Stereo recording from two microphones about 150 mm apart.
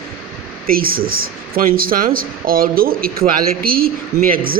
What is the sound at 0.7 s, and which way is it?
Speech, 75° right (ahead or behind).